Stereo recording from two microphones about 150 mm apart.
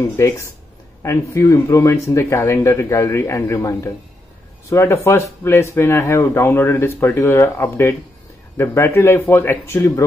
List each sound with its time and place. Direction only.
1.0 s speech: 20° left (ahead or behind)